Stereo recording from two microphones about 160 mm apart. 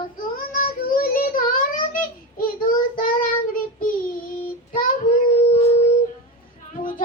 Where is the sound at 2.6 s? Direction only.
60° left (ahead or behind).